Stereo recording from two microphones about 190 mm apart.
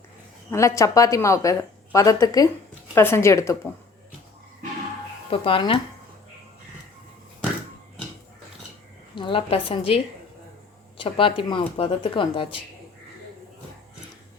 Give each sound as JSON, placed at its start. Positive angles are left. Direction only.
{"t": 0.8, "sound": "speech", "side_deg": 15}
{"t": 5.3, "sound": "speech", "side_deg": 30}
{"t": 9.1, "sound": "speech", "side_deg": 25}